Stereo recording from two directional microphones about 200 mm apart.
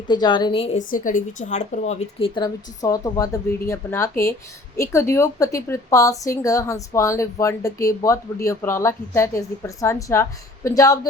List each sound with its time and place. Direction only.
0.1 s a woman's voice: 20° left (ahead or behind)
0.9 s a woman's voice: 40° left (ahead or behind); by 11.0 s 15° left (ahead or behind)